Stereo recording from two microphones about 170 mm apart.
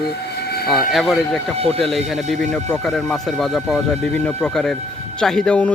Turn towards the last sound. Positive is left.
turn(degrees=5)  # may be behind; listen again after turning